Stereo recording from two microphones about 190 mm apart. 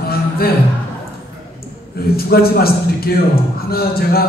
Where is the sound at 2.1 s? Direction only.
55° left (ahead or behind).